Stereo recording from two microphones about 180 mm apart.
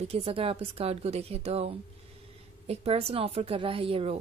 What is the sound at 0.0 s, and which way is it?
A woman's voice, 35° right (ahead or behind).